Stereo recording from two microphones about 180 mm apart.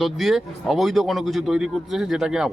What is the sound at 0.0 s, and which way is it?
Speech, centre (ahead or behind).